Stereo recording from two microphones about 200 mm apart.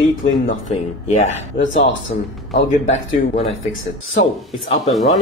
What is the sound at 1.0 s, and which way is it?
Speech, 35° left (ahead or behind).